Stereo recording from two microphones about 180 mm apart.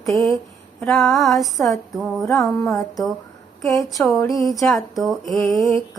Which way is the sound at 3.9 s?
Centre (ahead or behind).